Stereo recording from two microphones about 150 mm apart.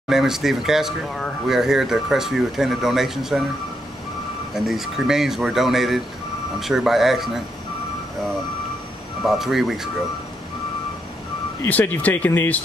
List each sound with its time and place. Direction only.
0.1 s speech: centre (ahead or behind)
4.6 s speech: 5° right (ahead or behind)
9.2 s speech: centre (ahead or behind)
11.6 s speech: 10° left (ahead or behind)